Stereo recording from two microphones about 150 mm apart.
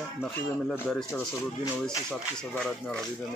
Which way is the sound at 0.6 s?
10° left (ahead or behind).